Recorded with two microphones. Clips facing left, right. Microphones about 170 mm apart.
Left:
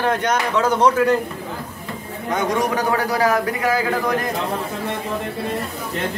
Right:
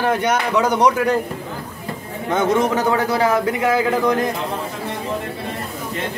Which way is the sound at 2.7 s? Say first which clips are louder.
Right 2 dB; 25° right (ahead or behind).